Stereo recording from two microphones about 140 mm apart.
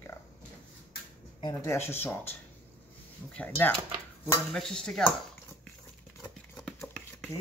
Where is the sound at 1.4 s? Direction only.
20° left (ahead or behind).